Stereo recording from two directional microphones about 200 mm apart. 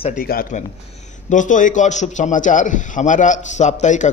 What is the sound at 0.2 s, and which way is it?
A man's voice, 45° left (ahead or behind).